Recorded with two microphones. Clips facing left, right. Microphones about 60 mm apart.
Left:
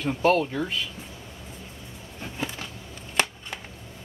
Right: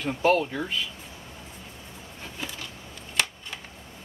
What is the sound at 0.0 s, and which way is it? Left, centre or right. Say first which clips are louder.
Speech: left 1 dB; centre.